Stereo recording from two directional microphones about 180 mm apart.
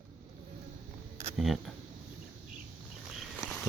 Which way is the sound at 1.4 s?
Centre (ahead or behind).